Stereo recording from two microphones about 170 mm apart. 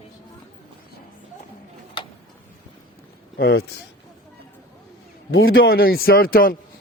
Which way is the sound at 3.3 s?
70° left (ahead or behind).